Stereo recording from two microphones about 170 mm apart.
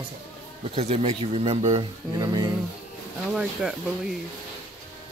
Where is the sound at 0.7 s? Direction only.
35° right (ahead or behind).